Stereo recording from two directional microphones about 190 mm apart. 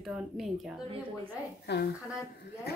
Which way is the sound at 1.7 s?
60° left (ahead or behind).